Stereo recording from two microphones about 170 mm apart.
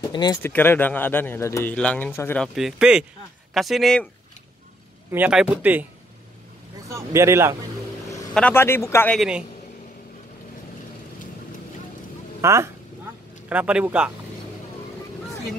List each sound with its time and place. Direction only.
0.1 s speech: 25° left (ahead or behind)
0.4 s speech: 10° left (ahead or behind)
2.4 s speech: centre (ahead or behind)
5.1 s speech: 5° right (ahead or behind)
6.9 s speech: 15° right (ahead or behind)
8.4 s speech: 10° left (ahead or behind)
9.1 s speech: centre (ahead or behind)
12.4 s a sound: 15° right (ahead or behind)